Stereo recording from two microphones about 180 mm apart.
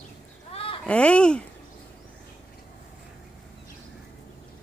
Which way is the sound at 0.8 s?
5° left (ahead or behind).